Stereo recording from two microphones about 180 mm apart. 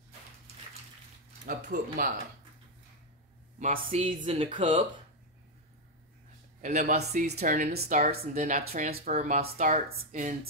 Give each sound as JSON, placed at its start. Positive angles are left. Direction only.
{"t": 1.4, "sound": "speech", "side_deg": -50}
{"t": 3.5, "sound": "speech", "side_deg": -40}
{"t": 6.6, "sound": "speech", "side_deg": -40}